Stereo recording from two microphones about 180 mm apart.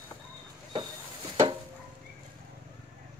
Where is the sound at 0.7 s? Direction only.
25° right (ahead or behind).